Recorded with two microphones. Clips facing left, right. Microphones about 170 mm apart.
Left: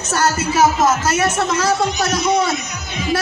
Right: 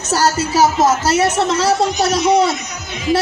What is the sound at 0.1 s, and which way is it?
Speech, 35° right (ahead or behind).